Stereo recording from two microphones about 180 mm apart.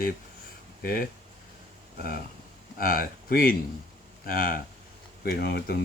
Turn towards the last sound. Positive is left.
turn(degrees=60)  # may be behind; listen again after turning